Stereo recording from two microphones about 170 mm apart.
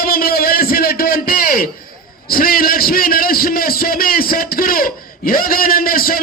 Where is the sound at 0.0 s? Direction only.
60° left (ahead or behind).